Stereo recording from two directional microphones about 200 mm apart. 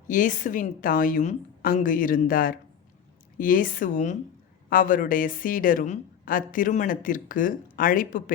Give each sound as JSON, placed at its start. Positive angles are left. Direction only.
{"t": 0.1, "sound": "a woman's voice", "side_deg": 40}